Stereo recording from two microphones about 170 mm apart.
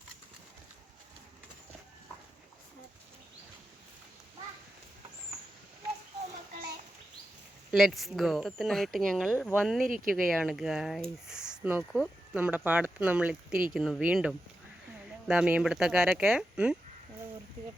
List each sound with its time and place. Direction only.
7.7 s speech: centre (ahead or behind)
9.9 s speech: 55° right (ahead or behind)
10.2 s speech: centre (ahead or behind)